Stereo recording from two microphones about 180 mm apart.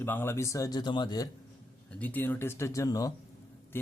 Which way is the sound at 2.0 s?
10° left (ahead or behind).